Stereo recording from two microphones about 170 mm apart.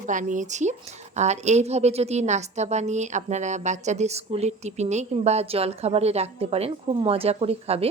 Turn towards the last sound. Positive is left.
turn(degrees=-35)  # may be behind; listen again after turning